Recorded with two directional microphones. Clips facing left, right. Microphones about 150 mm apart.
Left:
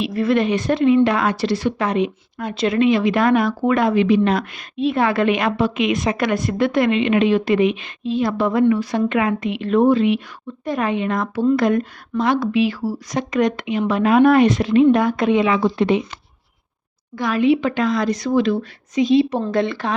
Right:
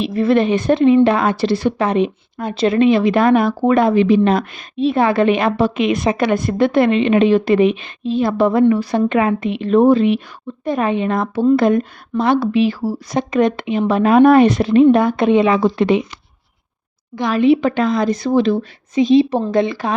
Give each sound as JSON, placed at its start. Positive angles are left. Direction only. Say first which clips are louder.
{"t": 0.0, "sound": "a woman's voice", "louder": "right 3 dB", "side_deg": -25}
{"t": 17.2, "sound": "a woman's voice", "louder": "right 3 dB", "side_deg": -25}